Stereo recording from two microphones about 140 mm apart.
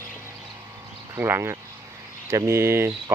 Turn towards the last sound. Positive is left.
turn(degrees=-20)  # may be behind; listen again after turning